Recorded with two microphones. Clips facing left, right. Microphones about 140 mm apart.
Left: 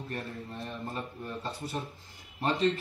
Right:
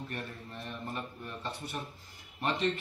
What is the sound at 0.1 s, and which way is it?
Speech, 30° left (ahead or behind).